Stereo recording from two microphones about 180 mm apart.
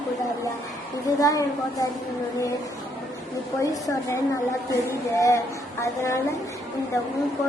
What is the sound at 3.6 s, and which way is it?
A woman's voice, 20° left (ahead or behind).